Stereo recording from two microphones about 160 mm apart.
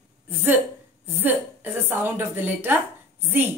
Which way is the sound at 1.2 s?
15° right (ahead or behind).